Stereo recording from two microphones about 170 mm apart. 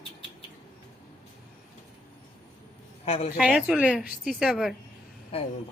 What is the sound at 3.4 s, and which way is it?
A woman's voice, 5° right (ahead or behind).